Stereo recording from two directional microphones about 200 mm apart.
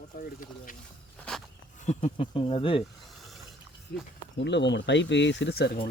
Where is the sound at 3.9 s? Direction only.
55° left (ahead or behind).